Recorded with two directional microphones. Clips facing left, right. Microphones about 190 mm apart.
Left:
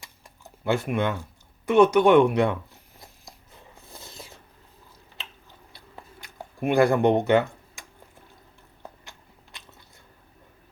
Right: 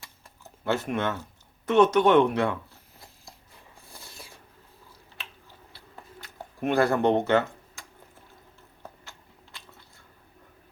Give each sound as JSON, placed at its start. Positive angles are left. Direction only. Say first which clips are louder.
{"t": 0.6, "sound": "speech", "louder": "left 3 dB", "side_deg": 10}
{"t": 3.0, "sound": "a sound", "louder": "left 2 dB", "side_deg": 20}
{"t": 5.1, "sound": "chewing", "louder": "left 1 dB", "side_deg": 20}
{"t": 9.0, "sound": "biting", "louder": "even", "side_deg": 20}